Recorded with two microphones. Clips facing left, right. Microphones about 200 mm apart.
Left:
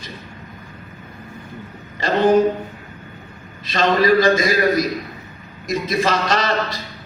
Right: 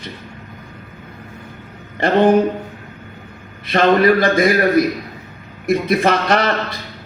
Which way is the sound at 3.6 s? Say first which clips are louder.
Right 4 dB; 60° right (ahead or behind).